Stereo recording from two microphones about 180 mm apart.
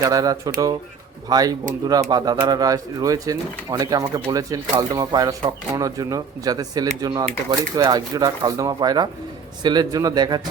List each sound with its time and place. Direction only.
0.0 s speech: 20° right (ahead or behind)